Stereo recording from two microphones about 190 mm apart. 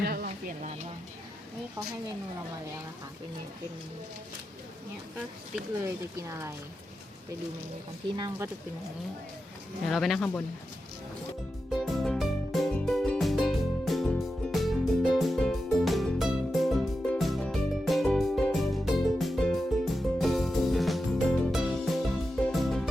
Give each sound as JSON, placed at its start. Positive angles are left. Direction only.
{"t": 0.0, "sound": "a sound", "side_deg": -55}
{"t": 0.3, "sound": "speech", "side_deg": -40}
{"t": 6.2, "sound": "speech", "side_deg": -15}
{"t": 8.0, "sound": "speech", "side_deg": -25}
{"t": 9.8, "sound": "speech", "side_deg": 0}
{"t": 11.7, "sound": "music", "side_deg": 0}